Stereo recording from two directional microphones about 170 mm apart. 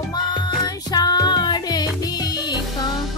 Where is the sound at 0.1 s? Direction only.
25° left (ahead or behind).